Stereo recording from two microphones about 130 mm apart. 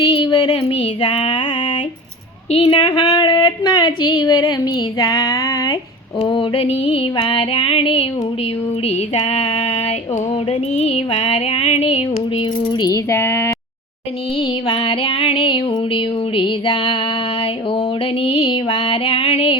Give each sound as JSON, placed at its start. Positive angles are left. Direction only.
{"t": 0.1, "sound": "female singing", "side_deg": 40}
{"t": 2.5, "sound": "female singing", "side_deg": 45}
{"t": 2.8, "sound": "a sound", "side_deg": 35}
{"t": 6.1, "sound": "female singing", "side_deg": 40}
{"t": 14.3, "sound": "female singing", "side_deg": 45}